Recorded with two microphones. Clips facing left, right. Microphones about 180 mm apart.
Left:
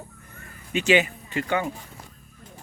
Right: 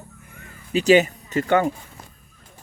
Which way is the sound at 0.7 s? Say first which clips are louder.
Right 5 dB; 40° right (ahead or behind).